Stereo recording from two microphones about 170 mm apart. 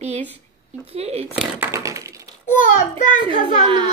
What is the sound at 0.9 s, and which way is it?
Speech, 35° right (ahead or behind).